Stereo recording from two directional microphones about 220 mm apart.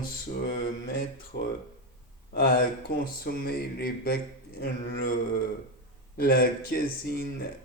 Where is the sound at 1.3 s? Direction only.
50° left (ahead or behind).